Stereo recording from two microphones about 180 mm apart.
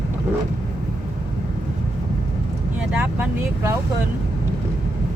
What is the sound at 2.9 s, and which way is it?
Vehicle, 10° right (ahead or behind).